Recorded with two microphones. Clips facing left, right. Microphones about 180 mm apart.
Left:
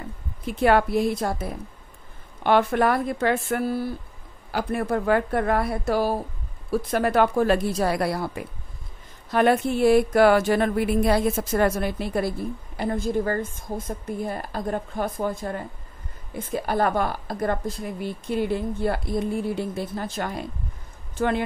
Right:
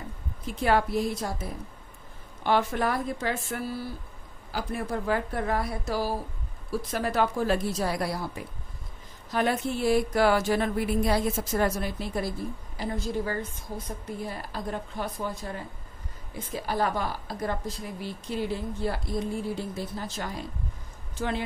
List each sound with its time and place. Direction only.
0.5 s speech: 65° left (ahead or behind)